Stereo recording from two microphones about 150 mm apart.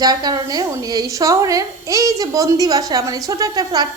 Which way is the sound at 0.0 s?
25° right (ahead or behind).